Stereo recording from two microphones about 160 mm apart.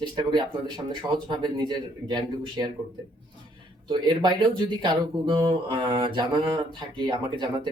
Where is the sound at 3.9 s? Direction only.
30° right (ahead or behind).